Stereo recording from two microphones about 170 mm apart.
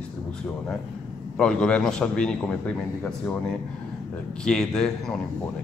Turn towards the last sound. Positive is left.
turn(degrees=5)  # may be behind; listen again after turning